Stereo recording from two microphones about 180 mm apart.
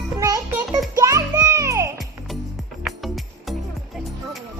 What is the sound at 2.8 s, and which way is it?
Music, centre (ahead or behind).